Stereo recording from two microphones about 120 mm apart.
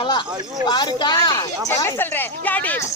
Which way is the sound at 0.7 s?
40° left (ahead or behind).